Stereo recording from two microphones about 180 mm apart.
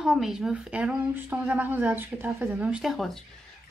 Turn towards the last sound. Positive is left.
turn(degrees=0)  # may be behind; listen again after turning